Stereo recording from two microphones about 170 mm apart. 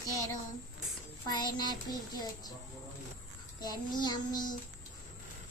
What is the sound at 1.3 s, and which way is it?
Speech, 25° left (ahead or behind).